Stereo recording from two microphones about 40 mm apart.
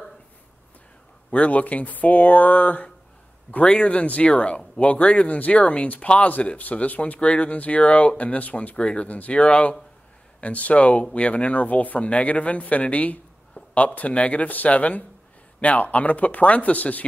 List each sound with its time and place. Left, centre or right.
1.3 s speech: left
5.9 s speech: left
6.7 s speech: left
8.7 s speech: left